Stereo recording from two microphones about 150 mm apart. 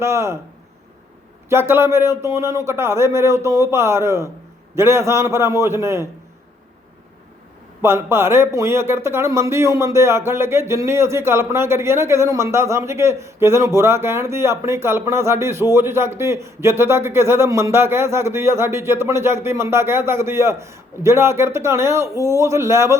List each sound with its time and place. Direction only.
0.0 s speech: 20° right (ahead or behind)
1.5 s speech: 15° right (ahead or behind)
7.8 s speech: 15° right (ahead or behind)